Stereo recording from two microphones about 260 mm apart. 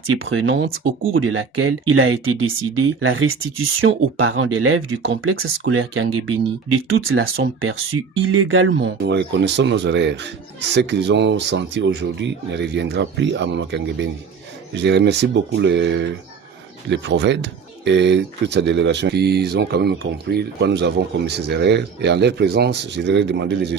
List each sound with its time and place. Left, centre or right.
0.1 s a man's voice: right